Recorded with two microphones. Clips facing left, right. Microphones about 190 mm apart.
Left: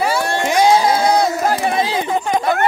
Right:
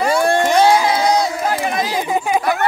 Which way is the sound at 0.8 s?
55° left (ahead or behind).